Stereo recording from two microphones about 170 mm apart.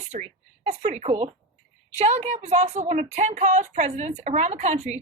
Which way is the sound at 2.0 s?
40° right (ahead or behind).